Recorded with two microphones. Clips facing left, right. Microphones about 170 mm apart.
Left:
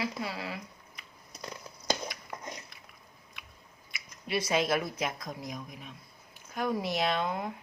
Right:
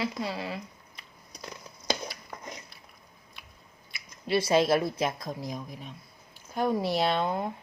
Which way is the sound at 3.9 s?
30° right (ahead or behind).